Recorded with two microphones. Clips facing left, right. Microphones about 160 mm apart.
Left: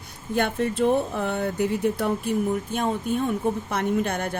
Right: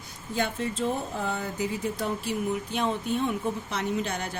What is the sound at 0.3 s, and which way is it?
A woman's voice, 60° left (ahead or behind).